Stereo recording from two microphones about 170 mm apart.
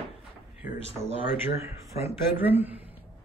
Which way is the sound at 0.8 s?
40° right (ahead or behind).